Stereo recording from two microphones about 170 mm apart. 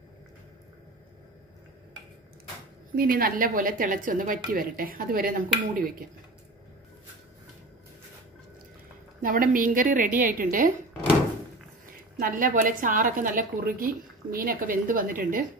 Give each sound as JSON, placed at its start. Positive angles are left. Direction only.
{"t": 3.0, "sound": "a woman's voice", "side_deg": -60}
{"t": 9.2, "sound": "a woman's voice", "side_deg": -55}
{"t": 12.2, "sound": "a woman's voice", "side_deg": -55}